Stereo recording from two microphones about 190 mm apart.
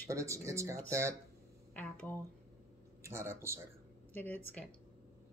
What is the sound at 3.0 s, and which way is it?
Speech, 15° right (ahead or behind).